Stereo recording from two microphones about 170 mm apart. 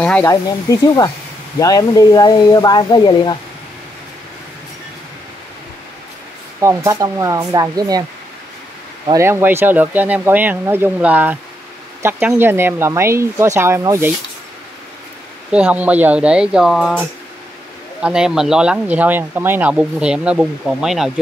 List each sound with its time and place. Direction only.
0.0 s snake: 5° left (ahead or behind)
0.3 s speech: 20° left (ahead or behind)
6.6 s speech: 15° right (ahead or behind)
9.0 s speech: 20° right (ahead or behind)
15.5 s speech: 10° right (ahead or behind)
18.0 s speech: 5° right (ahead or behind)